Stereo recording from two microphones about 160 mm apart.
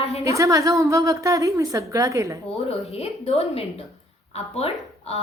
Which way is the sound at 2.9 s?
40° left (ahead or behind).